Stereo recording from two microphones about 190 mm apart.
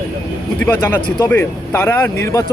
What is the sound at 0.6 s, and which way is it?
Speech, 10° left (ahead or behind).